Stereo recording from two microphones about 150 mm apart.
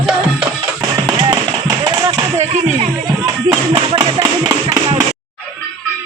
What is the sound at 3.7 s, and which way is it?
Music, 35° right (ahead or behind).